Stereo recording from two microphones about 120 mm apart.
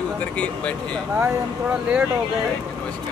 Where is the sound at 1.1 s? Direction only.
15° right (ahead or behind).